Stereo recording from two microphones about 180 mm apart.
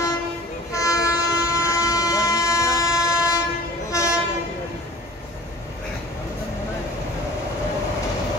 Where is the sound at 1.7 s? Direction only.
20° left (ahead or behind).